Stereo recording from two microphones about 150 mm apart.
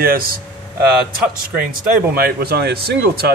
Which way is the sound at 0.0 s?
80° right.